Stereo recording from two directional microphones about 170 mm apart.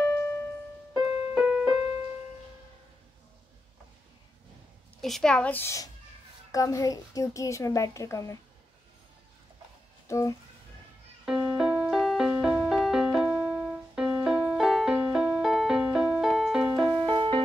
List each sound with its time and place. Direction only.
0.9 s keyboard: 5° right (ahead or behind)
5.0 s a woman's voice: 5° left (ahead or behind); by 8.4 s 20° left (ahead or behind)
10.0 s music: 15° left (ahead or behind)
11.2 s music: 5° right (ahead or behind)
16.8 s music: 30° right (ahead or behind)